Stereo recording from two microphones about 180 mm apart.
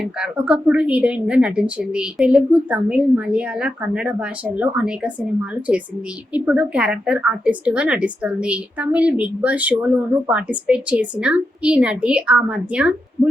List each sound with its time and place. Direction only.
0.0 s a woman's voice: 5° right (ahead or behind)